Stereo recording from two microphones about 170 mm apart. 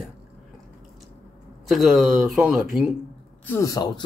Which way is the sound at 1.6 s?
Centre (ahead or behind).